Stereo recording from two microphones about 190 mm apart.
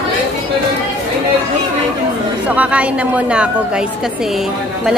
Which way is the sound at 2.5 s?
5° right (ahead or behind).